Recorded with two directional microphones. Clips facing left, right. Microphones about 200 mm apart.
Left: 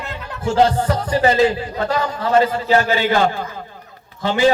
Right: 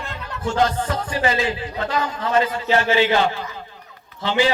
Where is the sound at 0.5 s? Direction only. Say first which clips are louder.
Left 5 dB; 35° left (ahead or behind).